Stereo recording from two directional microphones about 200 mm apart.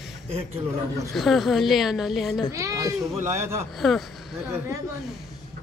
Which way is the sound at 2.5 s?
15° right (ahead or behind).